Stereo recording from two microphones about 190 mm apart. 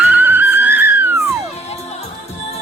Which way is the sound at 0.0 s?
10° right (ahead or behind).